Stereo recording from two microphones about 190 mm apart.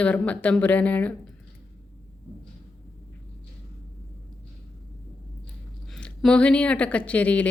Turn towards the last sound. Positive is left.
turn(degrees=10)  # may be behind; listen again after turning